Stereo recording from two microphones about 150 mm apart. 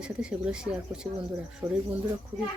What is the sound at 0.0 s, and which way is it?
Speech, 5° right (ahead or behind).